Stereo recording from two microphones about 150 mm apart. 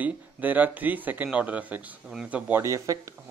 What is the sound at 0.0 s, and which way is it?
Speech, 10° right (ahead or behind).